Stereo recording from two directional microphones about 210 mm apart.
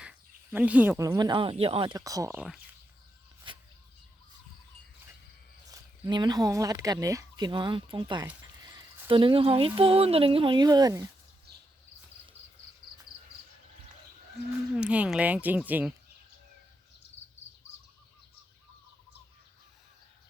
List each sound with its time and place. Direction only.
0.0 s speech: 5° right (ahead or behind)
3.5 s a sound: 25° right (ahead or behind)
5.7 s speech: 20° right (ahead or behind)
14.8 s speech: 5° right (ahead or behind)